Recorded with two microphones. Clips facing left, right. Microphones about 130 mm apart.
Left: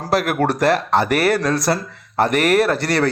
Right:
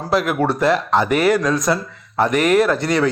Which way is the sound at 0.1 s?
70° left (ahead or behind).